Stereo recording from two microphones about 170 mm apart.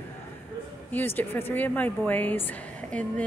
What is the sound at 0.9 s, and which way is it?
Speech, 15° left (ahead or behind).